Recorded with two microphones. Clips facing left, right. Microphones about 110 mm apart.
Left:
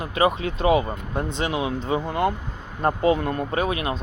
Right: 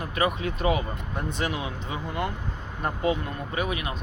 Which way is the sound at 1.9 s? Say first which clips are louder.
Left 8 dB; 35° left (ahead or behind).